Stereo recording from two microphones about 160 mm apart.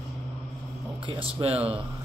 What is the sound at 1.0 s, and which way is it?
Speech, 35° right (ahead or behind).